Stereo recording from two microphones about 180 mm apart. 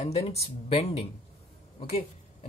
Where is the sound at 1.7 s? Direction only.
35° left (ahead or behind).